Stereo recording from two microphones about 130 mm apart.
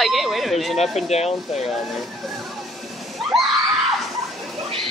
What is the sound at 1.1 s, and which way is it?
Speech, 55° left (ahead or behind).